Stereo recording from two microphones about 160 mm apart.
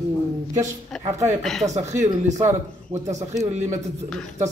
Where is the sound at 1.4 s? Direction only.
Centre (ahead or behind).